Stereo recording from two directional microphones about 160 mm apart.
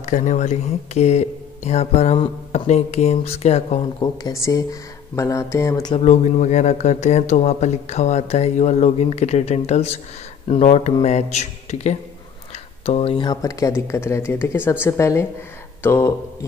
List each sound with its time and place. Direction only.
0.0 s speech: 50° left (ahead or behind)
4.0 s speech: 20° left (ahead or behind)
5.9 s speech: 45° left (ahead or behind)
13.3 s speech: 20° left (ahead or behind)